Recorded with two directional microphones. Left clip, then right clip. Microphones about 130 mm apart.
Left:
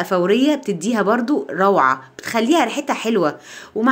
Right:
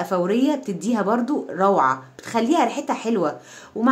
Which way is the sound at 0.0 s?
20° left (ahead or behind).